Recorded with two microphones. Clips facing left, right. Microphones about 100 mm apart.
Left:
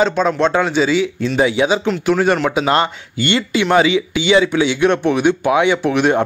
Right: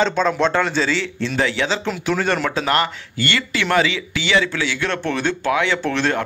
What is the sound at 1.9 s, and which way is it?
Speech, 5° left (ahead or behind).